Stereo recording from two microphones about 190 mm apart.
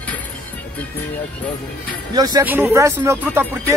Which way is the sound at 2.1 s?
20° right (ahead or behind).